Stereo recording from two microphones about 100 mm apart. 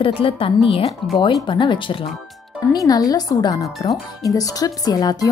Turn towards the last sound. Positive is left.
turn(degrees=40)  # may be behind; listen again after turning